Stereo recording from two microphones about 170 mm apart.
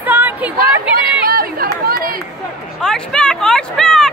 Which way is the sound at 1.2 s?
60° right (ahead or behind).